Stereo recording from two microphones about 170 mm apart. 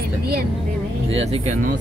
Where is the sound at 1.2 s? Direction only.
40° right (ahead or behind).